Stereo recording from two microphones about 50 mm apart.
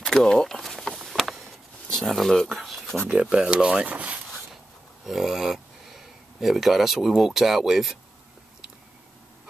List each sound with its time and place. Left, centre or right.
0.0 s a sound: centre
1.9 s speech: centre
3.1 s speech: right
5.0 s speech: centre